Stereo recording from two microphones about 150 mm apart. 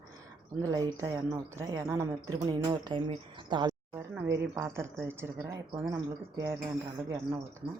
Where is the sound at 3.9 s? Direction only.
15° right (ahead or behind).